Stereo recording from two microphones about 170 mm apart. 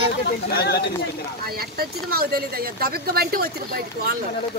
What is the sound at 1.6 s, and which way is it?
Speech, 65° right (ahead or behind).